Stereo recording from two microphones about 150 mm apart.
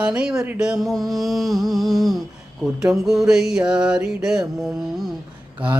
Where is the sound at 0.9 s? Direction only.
Centre (ahead or behind).